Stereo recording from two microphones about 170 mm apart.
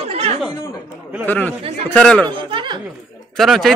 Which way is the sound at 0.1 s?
35° right (ahead or behind).